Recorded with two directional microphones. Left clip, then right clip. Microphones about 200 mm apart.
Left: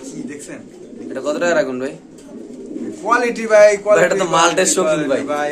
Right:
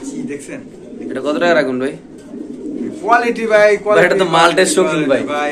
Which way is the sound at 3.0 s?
60° left (ahead or behind).